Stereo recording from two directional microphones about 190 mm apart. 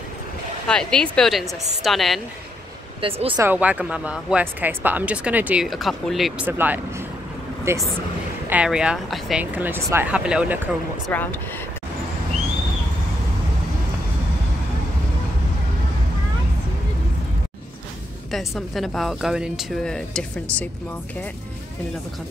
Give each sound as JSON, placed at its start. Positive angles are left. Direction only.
{"t": 0.7, "sound": "a woman's voice", "side_deg": 5}
{"t": 3.0, "sound": "speech", "side_deg": -30}
{"t": 3.3, "sound": "speech", "side_deg": -10}
{"t": 11.1, "sound": "speech", "side_deg": 10}
{"t": 18.3, "sound": "a woman's voice", "side_deg": 0}